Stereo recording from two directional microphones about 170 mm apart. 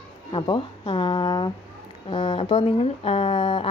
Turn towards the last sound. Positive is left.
turn(degrees=30)  # may be behind; listen again after turning